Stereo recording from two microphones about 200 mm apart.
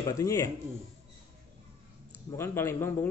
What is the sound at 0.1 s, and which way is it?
Speech, 15° left (ahead or behind).